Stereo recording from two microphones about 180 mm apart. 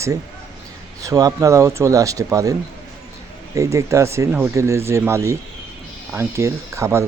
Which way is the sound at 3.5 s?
15° right (ahead or behind).